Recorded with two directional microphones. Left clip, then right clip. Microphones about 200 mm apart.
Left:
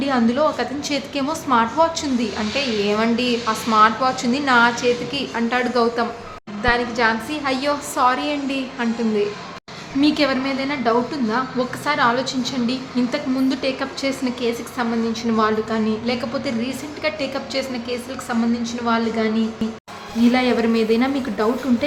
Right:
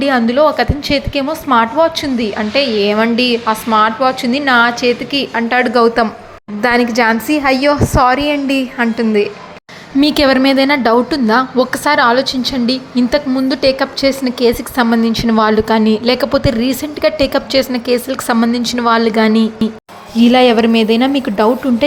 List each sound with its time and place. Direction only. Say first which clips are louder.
0.0 s a woman's voice: right 8 dB; 25° right (ahead or behind)
6.6 s a woman's voice: right 7 dB; 40° right (ahead or behind)